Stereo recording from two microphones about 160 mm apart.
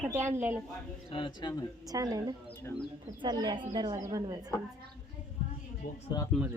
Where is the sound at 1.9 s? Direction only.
25° right (ahead or behind).